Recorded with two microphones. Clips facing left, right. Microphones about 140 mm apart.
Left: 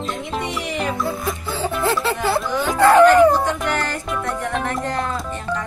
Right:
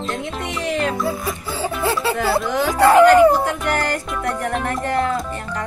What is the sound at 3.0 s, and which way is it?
Dog, 10° right (ahead or behind).